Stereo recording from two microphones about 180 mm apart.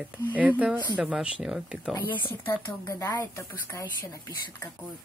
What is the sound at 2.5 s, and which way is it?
Speech, 10° left (ahead or behind).